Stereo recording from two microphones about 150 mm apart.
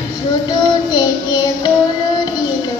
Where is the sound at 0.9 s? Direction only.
25° left (ahead or behind).